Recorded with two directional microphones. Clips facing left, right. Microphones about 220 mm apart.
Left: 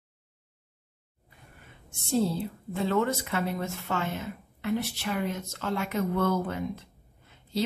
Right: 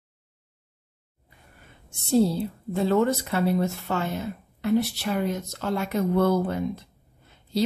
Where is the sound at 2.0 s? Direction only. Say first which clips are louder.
Right 5 dB; 35° right (ahead or behind).